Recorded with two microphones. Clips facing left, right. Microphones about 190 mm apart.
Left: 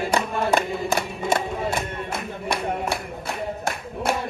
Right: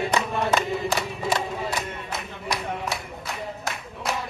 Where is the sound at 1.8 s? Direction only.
55° left (ahead or behind).